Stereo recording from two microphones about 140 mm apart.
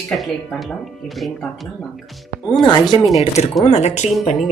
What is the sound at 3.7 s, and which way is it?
Speech, 50° left (ahead or behind).